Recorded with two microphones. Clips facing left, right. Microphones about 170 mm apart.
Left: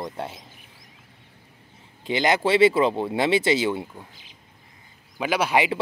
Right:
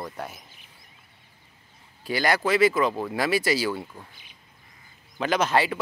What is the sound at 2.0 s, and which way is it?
Speech, 20° left (ahead or behind).